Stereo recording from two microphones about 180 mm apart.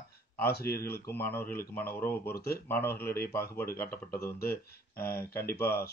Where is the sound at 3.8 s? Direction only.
15° left (ahead or behind).